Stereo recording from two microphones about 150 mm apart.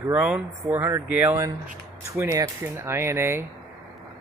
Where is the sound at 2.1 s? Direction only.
20° right (ahead or behind).